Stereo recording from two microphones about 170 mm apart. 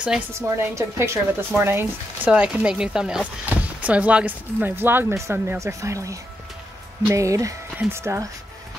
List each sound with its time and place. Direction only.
0.3 s speech: 15° right (ahead or behind)